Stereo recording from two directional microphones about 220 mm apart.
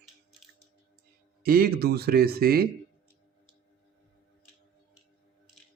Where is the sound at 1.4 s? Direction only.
45° right (ahead or behind).